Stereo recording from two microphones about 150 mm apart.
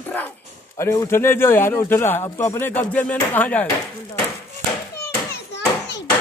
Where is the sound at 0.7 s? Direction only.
20° left (ahead or behind).